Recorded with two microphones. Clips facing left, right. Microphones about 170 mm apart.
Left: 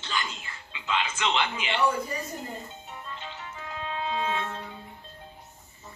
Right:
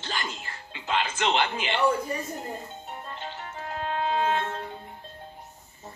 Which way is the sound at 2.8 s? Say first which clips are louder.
Right 3 dB; 45° right (ahead or behind).